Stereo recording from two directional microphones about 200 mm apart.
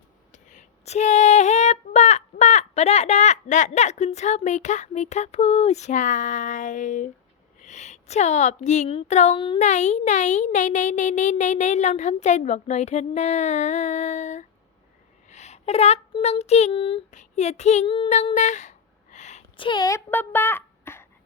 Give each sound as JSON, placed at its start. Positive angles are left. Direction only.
{"t": 0.3, "sound": "female singing", "side_deg": 35}
{"t": 7.6, "sound": "a child's voice", "side_deg": 35}
{"t": 19.1, "sound": "a sound", "side_deg": 35}
{"t": 19.6, "sound": "a child's voice", "side_deg": 20}